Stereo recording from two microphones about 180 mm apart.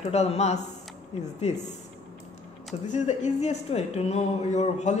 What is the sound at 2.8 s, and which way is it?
Speech, 40° left (ahead or behind).